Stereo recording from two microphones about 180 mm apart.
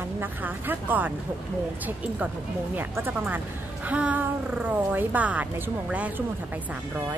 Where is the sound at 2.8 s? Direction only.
10° right (ahead or behind).